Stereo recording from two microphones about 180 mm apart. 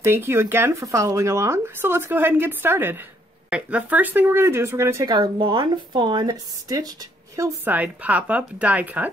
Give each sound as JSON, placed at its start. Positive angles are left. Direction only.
{"t": 0.0, "sound": "speech", "side_deg": -15}